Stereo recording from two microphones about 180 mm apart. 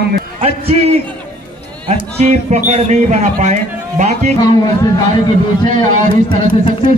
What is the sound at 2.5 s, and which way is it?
Speech, 40° right (ahead or behind).